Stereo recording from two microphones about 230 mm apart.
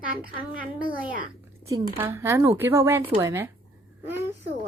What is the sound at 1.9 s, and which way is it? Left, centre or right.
Speech, centre.